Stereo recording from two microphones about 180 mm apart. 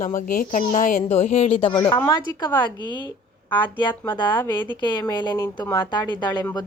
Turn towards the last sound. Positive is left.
turn(degrees=20)  # may be behind; listen again after turning